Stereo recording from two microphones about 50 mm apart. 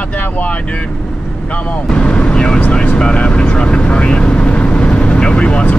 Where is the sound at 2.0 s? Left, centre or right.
Left.